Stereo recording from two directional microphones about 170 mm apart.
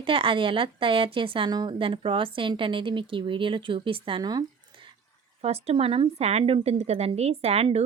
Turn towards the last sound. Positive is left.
turn(degrees=-35)  # may be behind; listen again after turning